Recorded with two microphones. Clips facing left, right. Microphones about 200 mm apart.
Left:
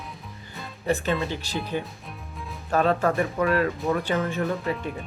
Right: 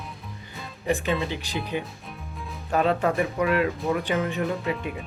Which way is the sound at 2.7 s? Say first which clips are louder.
Left 1 dB; 15° right (ahead or behind).